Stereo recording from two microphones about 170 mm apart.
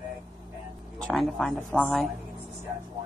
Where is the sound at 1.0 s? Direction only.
5° left (ahead or behind).